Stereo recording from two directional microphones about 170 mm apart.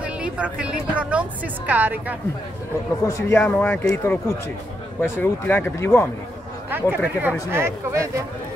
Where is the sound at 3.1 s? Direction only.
15° left (ahead or behind).